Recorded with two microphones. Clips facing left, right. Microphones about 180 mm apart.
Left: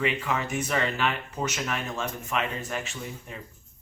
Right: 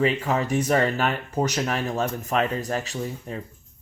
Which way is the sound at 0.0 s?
35° right (ahead or behind).